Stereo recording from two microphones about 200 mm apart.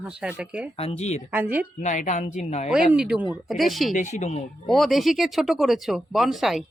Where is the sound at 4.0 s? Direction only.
35° left (ahead or behind).